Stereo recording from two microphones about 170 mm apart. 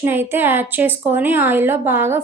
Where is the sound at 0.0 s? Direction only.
15° right (ahead or behind).